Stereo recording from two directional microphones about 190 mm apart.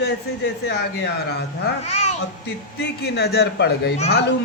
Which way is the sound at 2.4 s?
60° left (ahead or behind).